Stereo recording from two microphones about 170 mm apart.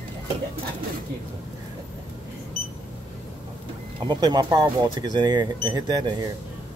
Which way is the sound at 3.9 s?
25° right (ahead or behind).